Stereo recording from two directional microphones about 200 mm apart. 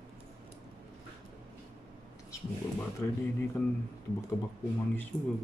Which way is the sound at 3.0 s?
15° left (ahead or behind).